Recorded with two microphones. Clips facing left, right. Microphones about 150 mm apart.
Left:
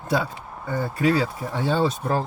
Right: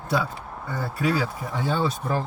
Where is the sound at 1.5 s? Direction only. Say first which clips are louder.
Left 3 dB; 30° left (ahead or behind).